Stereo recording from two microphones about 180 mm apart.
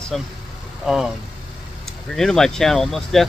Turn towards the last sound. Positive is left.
turn(degrees=0)  # may be behind; listen again after turning